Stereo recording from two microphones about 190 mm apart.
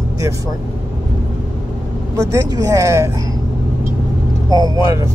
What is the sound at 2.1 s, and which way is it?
Speech, 15° right (ahead or behind).